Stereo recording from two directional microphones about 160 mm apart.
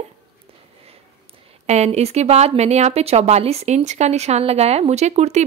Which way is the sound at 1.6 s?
45° right (ahead or behind).